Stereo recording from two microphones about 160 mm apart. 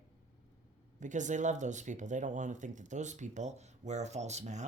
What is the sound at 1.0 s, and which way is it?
Speech, 50° right (ahead or behind).